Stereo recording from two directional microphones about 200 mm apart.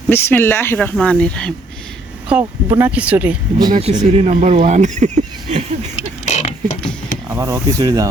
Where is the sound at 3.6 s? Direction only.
25° right (ahead or behind).